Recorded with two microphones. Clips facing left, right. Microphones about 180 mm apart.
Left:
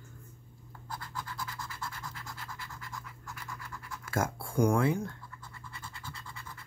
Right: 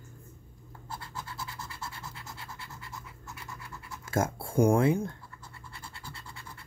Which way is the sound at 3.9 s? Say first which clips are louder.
Right 3 dB; 25° right (ahead or behind).